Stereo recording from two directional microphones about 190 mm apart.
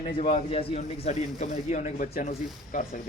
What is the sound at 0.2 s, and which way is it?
Speech, 35° left (ahead or behind).